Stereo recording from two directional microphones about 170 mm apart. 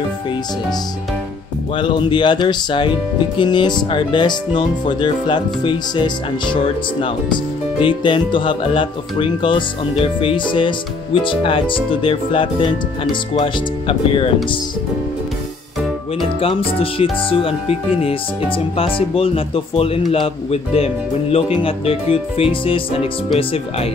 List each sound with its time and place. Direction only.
1.8 s a man's voice: 30° left (ahead or behind)
16.3 s a man's voice: 35° left (ahead or behind)
18.8 s a man's voice: 30° left (ahead or behind)